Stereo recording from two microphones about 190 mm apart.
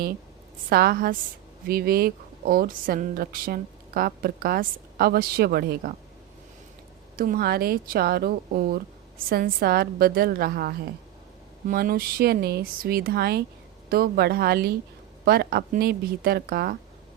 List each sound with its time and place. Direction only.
0.7 s speech: 55° right (ahead or behind)
7.2 s speech: 50° right (ahead or behind)